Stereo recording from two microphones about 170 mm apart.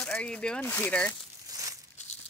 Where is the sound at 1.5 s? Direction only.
20° right (ahead or behind).